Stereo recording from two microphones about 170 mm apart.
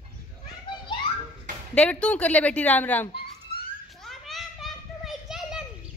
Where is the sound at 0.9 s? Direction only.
30° left (ahead or behind).